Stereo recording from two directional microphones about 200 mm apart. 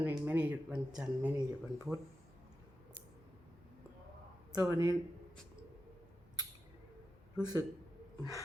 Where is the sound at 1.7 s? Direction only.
15° right (ahead or behind).